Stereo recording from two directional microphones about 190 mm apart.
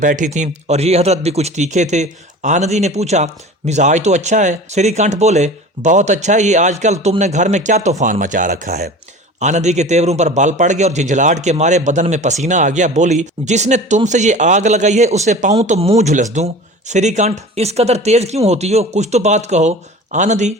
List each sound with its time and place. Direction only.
0.0 s a man's voice: 45° right (ahead or behind)